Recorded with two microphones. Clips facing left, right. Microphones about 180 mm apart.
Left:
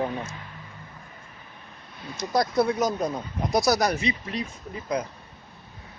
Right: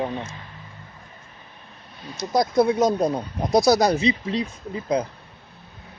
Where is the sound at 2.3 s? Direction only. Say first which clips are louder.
Right 4 dB; 15° right (ahead or behind).